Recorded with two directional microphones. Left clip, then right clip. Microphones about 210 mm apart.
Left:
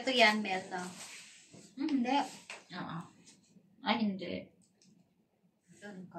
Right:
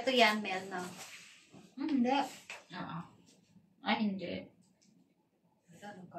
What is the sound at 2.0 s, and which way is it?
Speech, 5° right (ahead or behind).